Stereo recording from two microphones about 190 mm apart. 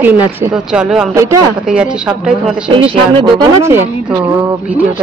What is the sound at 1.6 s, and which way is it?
A woman's voice, 5° right (ahead or behind).